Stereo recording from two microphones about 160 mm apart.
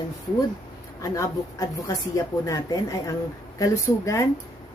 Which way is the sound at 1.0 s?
20° left (ahead or behind).